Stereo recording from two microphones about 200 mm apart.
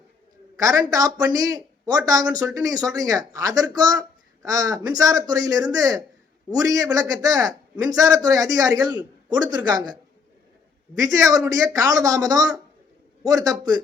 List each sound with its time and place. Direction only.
0.5 s a man's voice: 15° right (ahead or behind)